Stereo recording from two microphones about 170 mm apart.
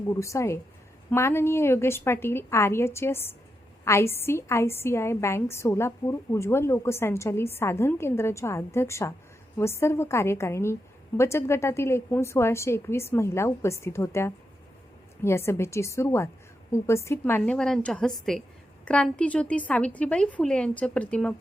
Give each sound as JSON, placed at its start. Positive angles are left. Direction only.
{"t": 0.1, "sound": "a woman's voice", "side_deg": 15}